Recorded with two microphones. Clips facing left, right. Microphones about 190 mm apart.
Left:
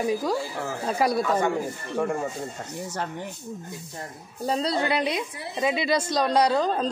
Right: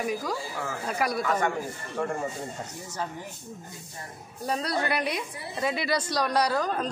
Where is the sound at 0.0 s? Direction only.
30° left (ahead or behind).